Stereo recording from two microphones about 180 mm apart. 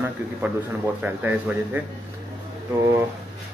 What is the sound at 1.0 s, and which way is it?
Speech, 10° right (ahead or behind).